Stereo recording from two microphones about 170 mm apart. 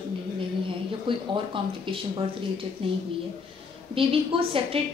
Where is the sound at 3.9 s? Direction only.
30° right (ahead or behind).